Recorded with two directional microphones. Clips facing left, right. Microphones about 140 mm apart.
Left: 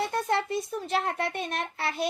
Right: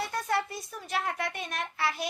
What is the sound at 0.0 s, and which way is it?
A child's voice, 25° left (ahead or behind).